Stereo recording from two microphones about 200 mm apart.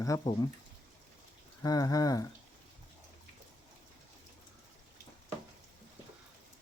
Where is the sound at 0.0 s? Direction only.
15° left (ahead or behind).